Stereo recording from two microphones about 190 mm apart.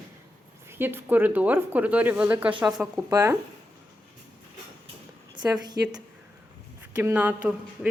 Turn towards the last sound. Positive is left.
turn(degrees=-10)  # may be behind; listen again after turning